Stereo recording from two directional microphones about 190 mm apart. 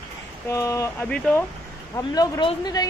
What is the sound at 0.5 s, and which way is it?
Speech, 15° left (ahead or behind).